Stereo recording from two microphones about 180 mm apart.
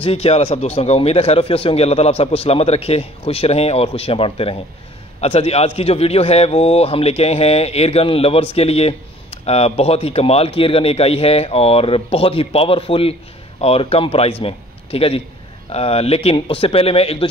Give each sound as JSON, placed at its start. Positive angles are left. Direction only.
{"t": 0.0, "sound": "a man's voice", "side_deg": 35}